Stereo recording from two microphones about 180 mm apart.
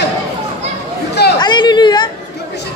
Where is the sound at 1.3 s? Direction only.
25° left (ahead or behind).